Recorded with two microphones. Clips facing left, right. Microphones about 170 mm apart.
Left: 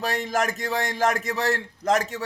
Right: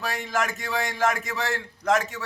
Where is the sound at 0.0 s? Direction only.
40° left (ahead or behind).